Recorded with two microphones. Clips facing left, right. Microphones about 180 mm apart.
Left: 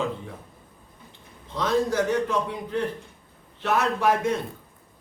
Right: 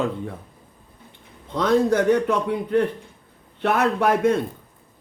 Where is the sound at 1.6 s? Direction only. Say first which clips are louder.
Right 5 dB; 55° right (ahead or behind).